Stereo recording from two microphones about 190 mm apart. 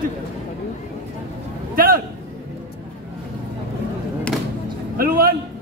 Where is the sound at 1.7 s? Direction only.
50° right (ahead or behind).